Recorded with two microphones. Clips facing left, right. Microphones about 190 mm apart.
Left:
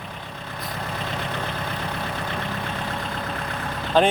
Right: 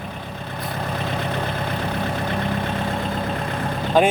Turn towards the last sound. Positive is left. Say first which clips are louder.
# right 2 dB
turn(degrees=-10)  # may be behind; listen again after turning